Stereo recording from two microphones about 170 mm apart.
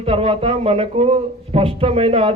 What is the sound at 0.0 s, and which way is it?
A man's voice, 35° right (ahead or behind).